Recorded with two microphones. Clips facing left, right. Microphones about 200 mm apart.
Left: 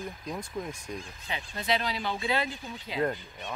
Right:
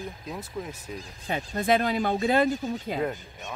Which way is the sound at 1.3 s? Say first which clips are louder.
Right 7 dB; 45° right (ahead or behind).